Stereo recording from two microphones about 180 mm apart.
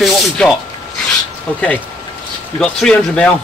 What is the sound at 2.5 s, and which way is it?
Speech, 5° left (ahead or behind).